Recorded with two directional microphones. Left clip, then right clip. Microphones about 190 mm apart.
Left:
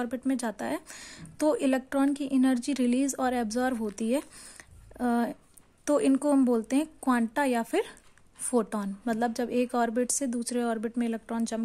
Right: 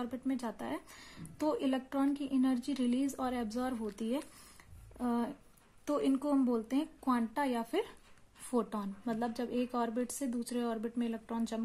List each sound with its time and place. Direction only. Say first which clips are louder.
0.0 s a woman's voice: left 7 dB; 40° left (ahead or behind)